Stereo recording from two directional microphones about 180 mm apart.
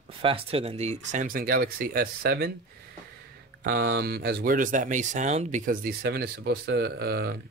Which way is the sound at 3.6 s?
60° right (ahead or behind).